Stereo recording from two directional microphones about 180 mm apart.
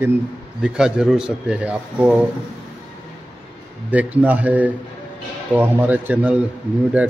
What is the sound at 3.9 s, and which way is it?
Speech, 10° right (ahead or behind).